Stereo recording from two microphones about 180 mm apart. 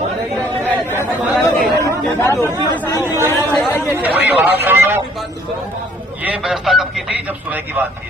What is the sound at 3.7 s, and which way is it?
Speech, 15° left (ahead or behind).